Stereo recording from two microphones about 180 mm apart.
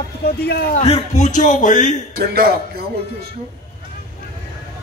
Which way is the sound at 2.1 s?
60° right (ahead or behind).